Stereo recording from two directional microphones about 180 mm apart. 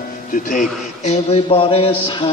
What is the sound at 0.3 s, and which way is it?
A man's voice, 45° left (ahead or behind).